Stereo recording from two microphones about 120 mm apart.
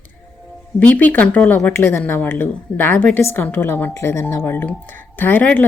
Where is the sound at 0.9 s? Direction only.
15° left (ahead or behind).